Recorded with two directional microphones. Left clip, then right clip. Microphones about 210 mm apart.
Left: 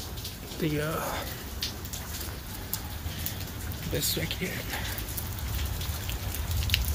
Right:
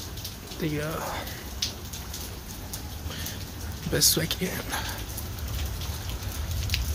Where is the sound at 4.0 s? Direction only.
35° right (ahead or behind).